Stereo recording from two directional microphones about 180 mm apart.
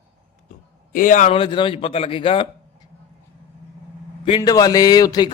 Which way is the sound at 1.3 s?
25° left (ahead or behind).